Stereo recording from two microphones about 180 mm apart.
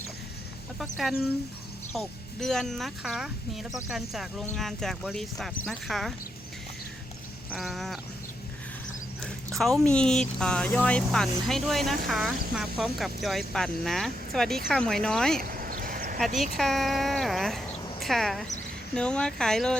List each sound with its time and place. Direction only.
0.8 s speech: centre (ahead or behind)
7.5 s speech: centre (ahead or behind)
9.2 s speech: centre (ahead or behind)
15.4 s a sound: 55° right (ahead or behind)
16.1 s speech: centre (ahead or behind)